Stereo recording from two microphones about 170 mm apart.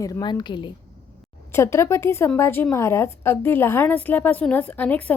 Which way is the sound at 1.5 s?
15° left (ahead or behind).